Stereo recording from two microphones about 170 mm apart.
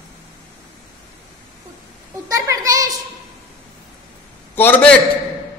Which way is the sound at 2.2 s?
20° right (ahead or behind).